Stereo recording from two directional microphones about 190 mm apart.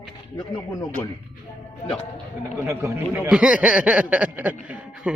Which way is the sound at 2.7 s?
15° right (ahead or behind).